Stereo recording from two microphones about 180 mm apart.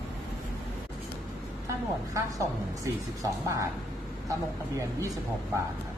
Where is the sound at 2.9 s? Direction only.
15° right (ahead or behind).